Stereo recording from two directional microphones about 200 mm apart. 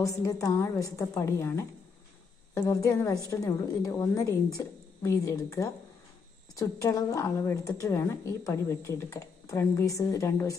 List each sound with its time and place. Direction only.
0.0 s speech: 15° left (ahead or behind)